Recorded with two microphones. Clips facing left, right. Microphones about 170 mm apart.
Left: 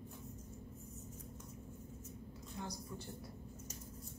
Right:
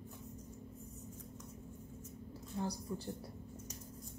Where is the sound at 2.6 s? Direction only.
35° right (ahead or behind).